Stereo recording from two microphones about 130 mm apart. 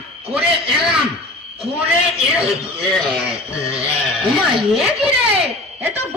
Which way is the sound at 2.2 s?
5° right (ahead or behind).